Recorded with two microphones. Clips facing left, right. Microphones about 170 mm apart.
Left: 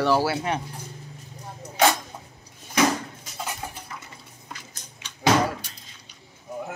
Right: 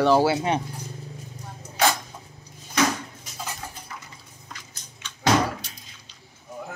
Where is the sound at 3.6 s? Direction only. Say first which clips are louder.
Left 3 dB; 15° left (ahead or behind).